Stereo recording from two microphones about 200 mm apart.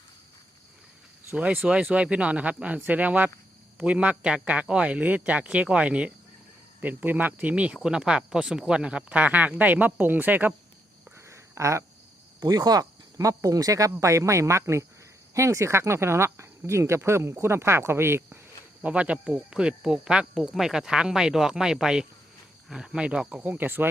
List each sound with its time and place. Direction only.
1.3 s speech: 10° right (ahead or behind)
11.3 s a sound: 15° right (ahead or behind)
12.4 s speech: 20° right (ahead or behind)